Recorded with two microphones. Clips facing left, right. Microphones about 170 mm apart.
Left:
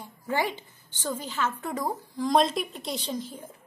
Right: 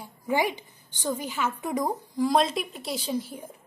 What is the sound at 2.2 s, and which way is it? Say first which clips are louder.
A woman's voice: left 1 dB; centre (ahead or behind).